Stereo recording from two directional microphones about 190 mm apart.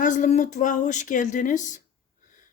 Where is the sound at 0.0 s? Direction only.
40° left (ahead or behind).